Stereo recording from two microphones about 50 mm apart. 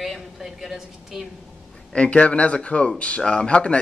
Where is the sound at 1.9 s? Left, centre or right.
Left.